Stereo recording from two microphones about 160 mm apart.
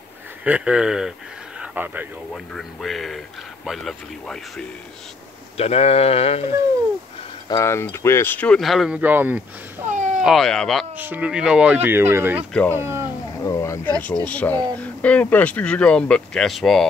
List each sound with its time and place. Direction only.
0.4 s a man's voice: 5° right (ahead or behind)
1.6 s a sound: 10° right (ahead or behind)
2.5 s a man's voice: centre (ahead or behind)
5.6 s speech: 40° left (ahead or behind)
7.4 s speech: 20° left (ahead or behind); by 9.8 s 10° right (ahead or behind)
9.8 s cat: 55° right (ahead or behind)
10.2 s a man's voice: centre (ahead or behind)
11.0 s speech: 10° right (ahead or behind)
13.5 s a sound: 20° left (ahead or behind)
14.2 s speech: 10° left (ahead or behind)